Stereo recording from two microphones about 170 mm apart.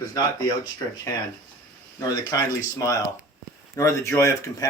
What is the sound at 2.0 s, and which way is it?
Speech, 20° left (ahead or behind).